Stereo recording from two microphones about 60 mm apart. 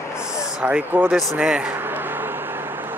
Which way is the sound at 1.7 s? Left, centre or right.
Right.